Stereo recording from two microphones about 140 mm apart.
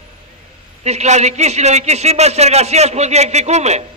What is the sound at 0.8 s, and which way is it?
Speech, 55° right (ahead or behind).